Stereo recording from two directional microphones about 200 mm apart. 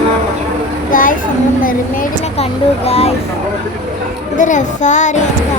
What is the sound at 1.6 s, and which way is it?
Speech, 45° left (ahead or behind).